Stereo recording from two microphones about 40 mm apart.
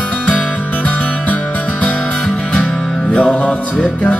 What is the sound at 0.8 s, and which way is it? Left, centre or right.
Music, left.